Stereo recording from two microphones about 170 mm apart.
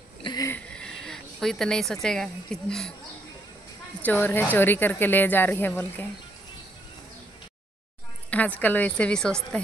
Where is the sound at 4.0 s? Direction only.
10° left (ahead or behind).